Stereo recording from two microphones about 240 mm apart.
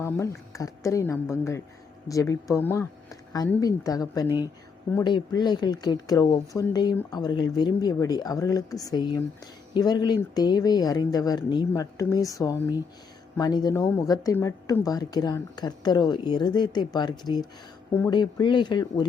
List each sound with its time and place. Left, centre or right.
0.0 s speech: centre